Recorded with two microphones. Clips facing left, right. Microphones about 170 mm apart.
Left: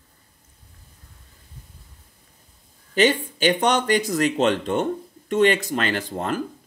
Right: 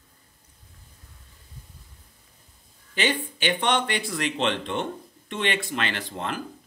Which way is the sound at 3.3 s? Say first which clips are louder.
Left 5 dB; 40° left (ahead or behind).